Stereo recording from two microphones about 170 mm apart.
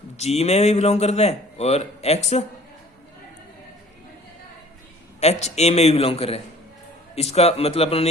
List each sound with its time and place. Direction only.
0.2 s a man's voice: 40° left (ahead or behind)
5.2 s a man's voice: 40° left (ahead or behind)